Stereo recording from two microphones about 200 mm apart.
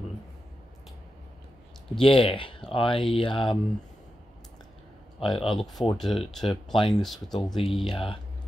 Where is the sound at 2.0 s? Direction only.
25° left (ahead or behind).